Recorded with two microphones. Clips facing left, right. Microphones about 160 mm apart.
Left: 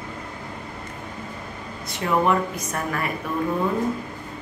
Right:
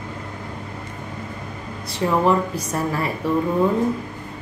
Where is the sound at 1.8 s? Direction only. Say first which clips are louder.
Right 3 dB; 30° right (ahead or behind).